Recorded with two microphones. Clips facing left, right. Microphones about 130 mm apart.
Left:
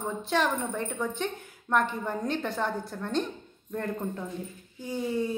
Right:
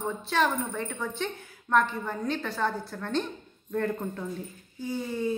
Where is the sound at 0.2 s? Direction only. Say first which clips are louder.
Even; 15° left (ahead or behind).